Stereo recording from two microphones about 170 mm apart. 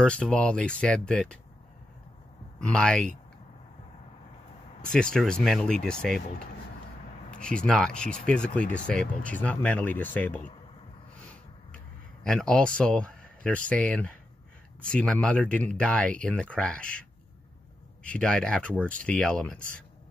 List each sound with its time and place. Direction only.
0.0 s speech: 5° left (ahead or behind)
2.6 s speech: 5° left (ahead or behind)
4.9 s speech: 5° left (ahead or behind)
7.2 s speech: 5° left (ahead or behind)
11.7 s speech: 5° left (ahead or behind)
18.0 s speech: 5° left (ahead or behind)